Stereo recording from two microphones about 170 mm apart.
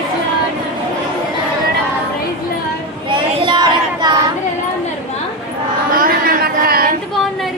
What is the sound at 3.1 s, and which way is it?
Child singing, 25° right (ahead or behind).